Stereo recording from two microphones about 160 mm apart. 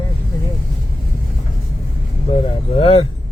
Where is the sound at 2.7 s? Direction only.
40° left (ahead or behind).